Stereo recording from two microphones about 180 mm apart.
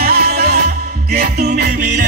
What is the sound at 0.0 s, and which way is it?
Music, 60° right (ahead or behind).